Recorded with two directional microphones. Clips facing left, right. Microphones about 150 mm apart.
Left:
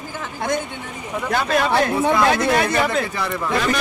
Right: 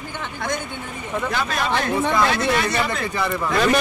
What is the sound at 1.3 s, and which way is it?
Speech, 45° left (ahead or behind).